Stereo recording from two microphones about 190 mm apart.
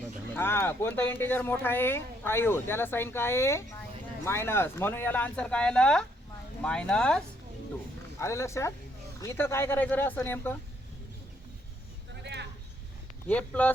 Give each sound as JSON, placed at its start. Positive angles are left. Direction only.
{"t": 0.3, "sound": "speech", "side_deg": 10}
{"t": 8.2, "sound": "speech", "side_deg": 15}
{"t": 12.2, "sound": "a sound", "side_deg": -65}
{"t": 13.2, "sound": "speech", "side_deg": 10}